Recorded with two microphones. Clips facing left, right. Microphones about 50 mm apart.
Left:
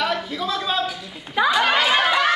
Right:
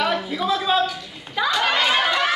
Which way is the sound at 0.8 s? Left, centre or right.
Centre.